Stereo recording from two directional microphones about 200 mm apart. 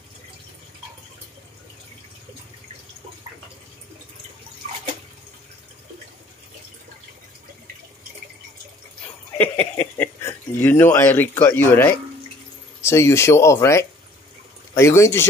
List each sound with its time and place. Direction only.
9.4 s speech: 10° left (ahead or behind)